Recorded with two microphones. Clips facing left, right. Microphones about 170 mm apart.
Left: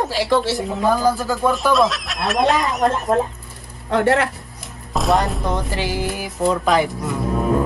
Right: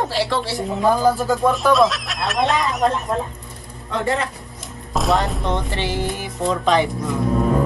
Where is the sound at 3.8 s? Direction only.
70° left (ahead or behind).